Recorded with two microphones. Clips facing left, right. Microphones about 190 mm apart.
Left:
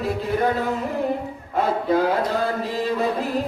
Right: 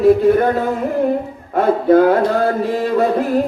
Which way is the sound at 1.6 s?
50° right (ahead or behind).